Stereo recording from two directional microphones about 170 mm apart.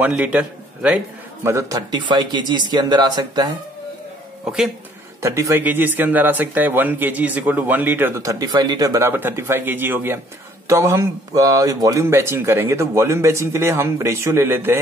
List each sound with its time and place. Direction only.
0.0 s a man's voice: 10° right (ahead or behind); by 3.4 s 25° right (ahead or behind)
4.5 s speech: centre (ahead or behind)
5.2 s speech: 15° right (ahead or behind)